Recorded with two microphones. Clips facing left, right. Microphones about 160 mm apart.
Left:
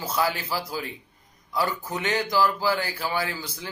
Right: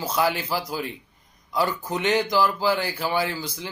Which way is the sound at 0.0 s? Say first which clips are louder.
Right 2 dB; 15° right (ahead or behind).